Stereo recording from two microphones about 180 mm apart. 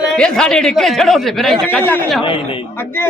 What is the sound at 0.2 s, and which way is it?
A man's voice, 5° left (ahead or behind).